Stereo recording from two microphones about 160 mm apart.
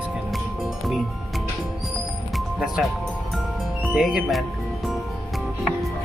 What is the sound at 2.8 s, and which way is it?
Speech, centre (ahead or behind).